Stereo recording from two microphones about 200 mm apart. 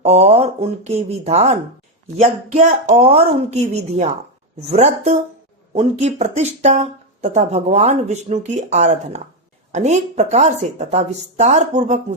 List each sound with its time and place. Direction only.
0.0 s a woman's voice: 30° right (ahead or behind)
4.7 s speech: 35° right (ahead or behind)